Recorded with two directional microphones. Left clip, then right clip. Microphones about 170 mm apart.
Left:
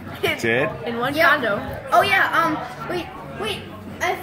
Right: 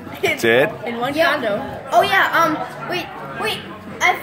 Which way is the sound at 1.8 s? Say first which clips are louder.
Right 1 dB; centre (ahead or behind).